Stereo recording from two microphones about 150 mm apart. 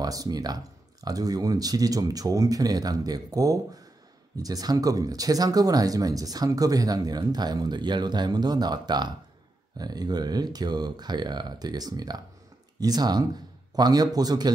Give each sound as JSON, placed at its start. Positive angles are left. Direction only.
{"t": 0.0, "sound": "speech", "side_deg": -25}